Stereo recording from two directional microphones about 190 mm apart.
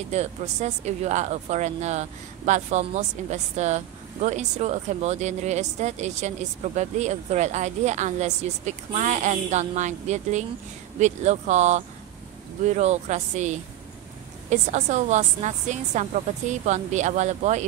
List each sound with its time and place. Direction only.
0.1 s speech: 35° right (ahead or behind)